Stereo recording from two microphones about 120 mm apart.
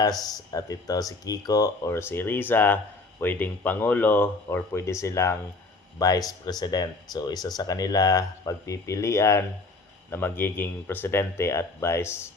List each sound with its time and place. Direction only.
0.3 s speech: 30° left (ahead or behind)